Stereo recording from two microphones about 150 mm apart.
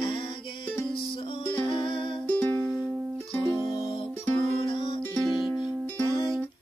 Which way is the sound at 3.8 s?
35° left (ahead or behind).